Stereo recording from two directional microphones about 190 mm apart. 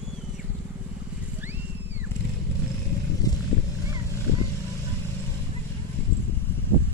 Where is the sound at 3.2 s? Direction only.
20° left (ahead or behind).